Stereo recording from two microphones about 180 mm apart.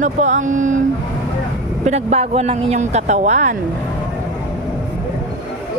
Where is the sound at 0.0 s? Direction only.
40° right (ahead or behind).